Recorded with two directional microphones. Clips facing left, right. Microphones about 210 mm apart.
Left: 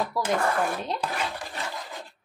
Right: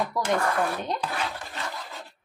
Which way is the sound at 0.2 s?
5° left (ahead or behind).